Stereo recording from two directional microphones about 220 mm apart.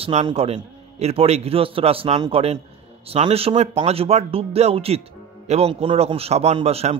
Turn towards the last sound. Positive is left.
turn(degrees=-30)  # may be behind; listen again after turning